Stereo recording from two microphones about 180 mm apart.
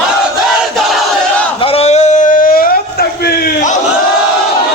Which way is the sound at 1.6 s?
35° left (ahead or behind).